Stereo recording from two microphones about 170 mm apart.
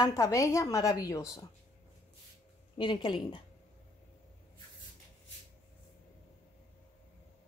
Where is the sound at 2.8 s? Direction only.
30° left (ahead or behind).